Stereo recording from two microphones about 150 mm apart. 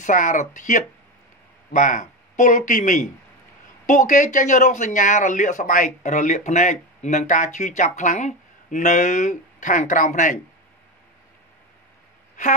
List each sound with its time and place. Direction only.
0.0 s speech: 60° left (ahead or behind)